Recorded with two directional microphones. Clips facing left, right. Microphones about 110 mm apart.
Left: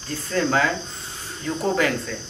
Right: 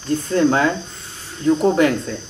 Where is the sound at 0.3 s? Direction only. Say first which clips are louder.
Right 4 dB; 20° right (ahead or behind).